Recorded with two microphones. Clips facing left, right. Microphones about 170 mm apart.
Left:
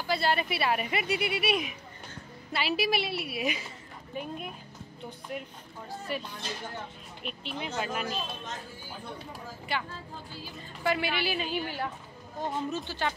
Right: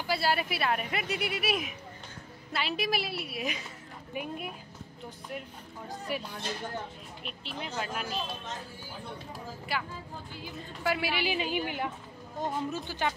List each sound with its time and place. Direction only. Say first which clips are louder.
0.0 s speech: left 1 dB; 5° right (ahead or behind)
4.1 s a woman's voice: even; 10° right (ahead or behind)
5.9 s a woman's voice: even; 15° right (ahead or behind)
7.2 s speech: left 3 dB; centre (ahead or behind)
9.7 s a woman's voice: left 1 dB; 5° right (ahead or behind)